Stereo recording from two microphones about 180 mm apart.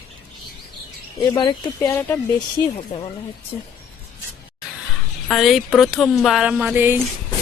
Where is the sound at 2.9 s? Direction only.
30° left (ahead or behind).